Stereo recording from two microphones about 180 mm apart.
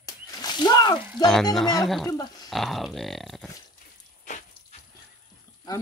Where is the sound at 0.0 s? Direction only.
20° left (ahead or behind).